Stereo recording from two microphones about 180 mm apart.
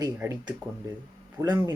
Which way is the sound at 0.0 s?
15° right (ahead or behind).